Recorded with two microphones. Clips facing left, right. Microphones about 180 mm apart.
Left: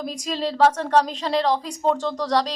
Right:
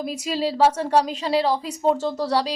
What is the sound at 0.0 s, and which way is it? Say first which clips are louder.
A woman's voice: right 2 dB; 5° right (ahead or behind).